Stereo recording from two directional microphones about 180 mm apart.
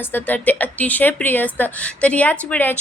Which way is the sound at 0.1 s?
10° left (ahead or behind).